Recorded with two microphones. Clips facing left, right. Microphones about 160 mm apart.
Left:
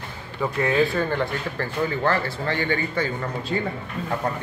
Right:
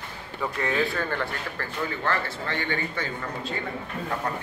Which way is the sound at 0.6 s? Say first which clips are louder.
Left 6 dB; 15° left (ahead or behind).